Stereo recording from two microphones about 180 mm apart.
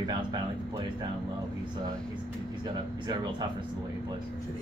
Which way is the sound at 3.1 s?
25° right (ahead or behind).